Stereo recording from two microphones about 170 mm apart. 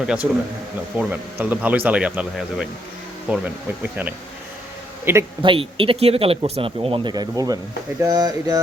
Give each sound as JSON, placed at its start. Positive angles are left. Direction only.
{"t": 0.0, "sound": "speech", "side_deg": -5}
{"t": 5.1, "sound": "speech", "side_deg": -15}
{"t": 5.4, "sound": "speech", "side_deg": -30}